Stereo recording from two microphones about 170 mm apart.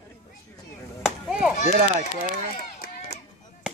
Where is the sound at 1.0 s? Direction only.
5° right (ahead or behind).